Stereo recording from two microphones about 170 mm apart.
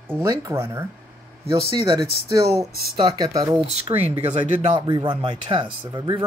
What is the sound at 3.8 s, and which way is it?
Speech, 35° right (ahead or behind).